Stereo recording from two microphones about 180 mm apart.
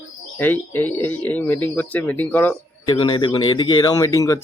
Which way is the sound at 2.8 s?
25° left (ahead or behind).